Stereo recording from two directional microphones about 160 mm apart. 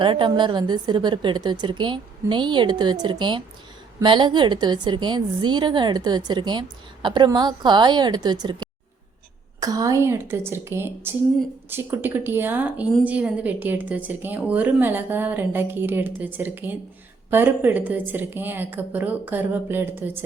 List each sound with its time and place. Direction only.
0.0 s a woman's voice: 30° right (ahead or behind); by 20.2 s 10° right (ahead or behind)